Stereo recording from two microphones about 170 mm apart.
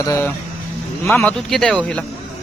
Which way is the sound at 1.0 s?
Centre (ahead or behind).